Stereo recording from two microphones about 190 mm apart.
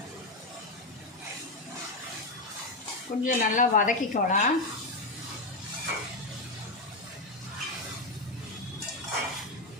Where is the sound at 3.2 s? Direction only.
45° left (ahead or behind).